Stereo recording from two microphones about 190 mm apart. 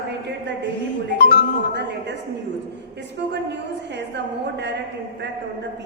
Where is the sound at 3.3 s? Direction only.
65° right (ahead or behind).